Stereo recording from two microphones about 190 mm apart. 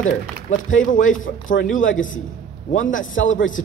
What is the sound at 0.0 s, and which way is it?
Speech, 40° left (ahead or behind).